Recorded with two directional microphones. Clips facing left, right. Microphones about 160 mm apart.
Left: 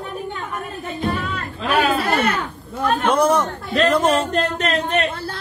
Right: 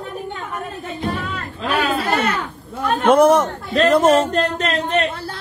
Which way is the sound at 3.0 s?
50° right (ahead or behind).